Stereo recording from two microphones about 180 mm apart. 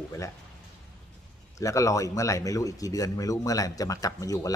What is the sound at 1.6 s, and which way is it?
Speech, 20° left (ahead or behind).